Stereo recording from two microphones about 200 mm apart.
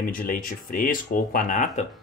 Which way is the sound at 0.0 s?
45° left (ahead or behind).